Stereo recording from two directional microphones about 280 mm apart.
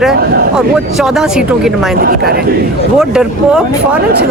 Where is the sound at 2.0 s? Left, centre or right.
Right.